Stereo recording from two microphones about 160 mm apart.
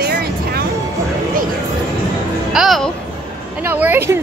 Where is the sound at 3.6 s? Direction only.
10° right (ahead or behind).